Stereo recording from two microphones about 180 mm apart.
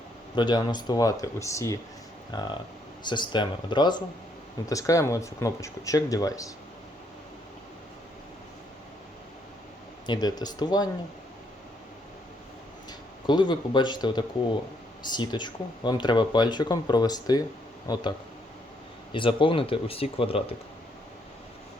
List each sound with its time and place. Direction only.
0.3 s speech: 25° left (ahead or behind)
10.1 s speech: 25° left (ahead or behind)
13.2 s speech: 25° left (ahead or behind)
19.1 s speech: 30° left (ahead or behind)